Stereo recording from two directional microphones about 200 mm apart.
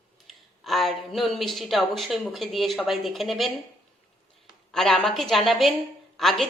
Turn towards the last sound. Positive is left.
turn(degrees=0)  # may be behind; listen again after turning